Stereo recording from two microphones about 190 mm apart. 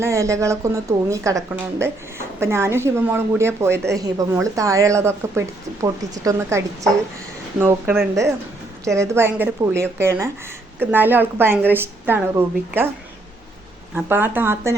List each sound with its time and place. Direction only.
0.0 s a woman's voice: 15° right (ahead or behind)
7.6 s a woman's voice: 10° right (ahead or behind)
13.9 s a woman's voice: 10° right (ahead or behind)